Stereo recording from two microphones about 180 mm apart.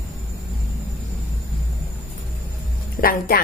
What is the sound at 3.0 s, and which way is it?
Speech, 55° left (ahead or behind).